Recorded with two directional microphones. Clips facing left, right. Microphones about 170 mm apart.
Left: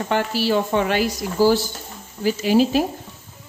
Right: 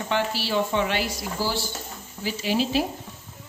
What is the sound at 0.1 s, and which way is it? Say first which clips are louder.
Speech: left 5 dB; 45° left (ahead or behind).